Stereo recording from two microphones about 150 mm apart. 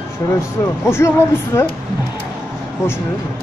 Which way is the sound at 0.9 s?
15° left (ahead or behind).